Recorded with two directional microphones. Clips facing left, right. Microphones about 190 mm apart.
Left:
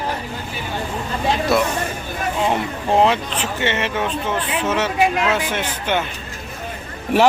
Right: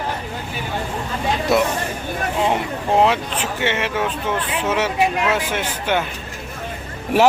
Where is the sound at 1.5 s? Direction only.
20° right (ahead or behind).